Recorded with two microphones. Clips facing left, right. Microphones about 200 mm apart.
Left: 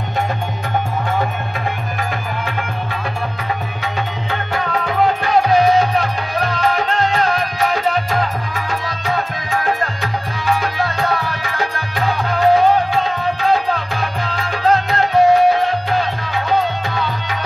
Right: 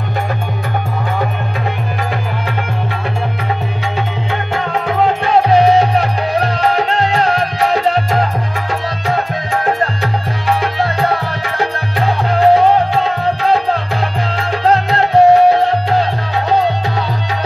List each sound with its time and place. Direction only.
4.8 s music: 25° right (ahead or behind)
10.5 s music: 30° right (ahead or behind)
14.3 s music: 30° right (ahead or behind)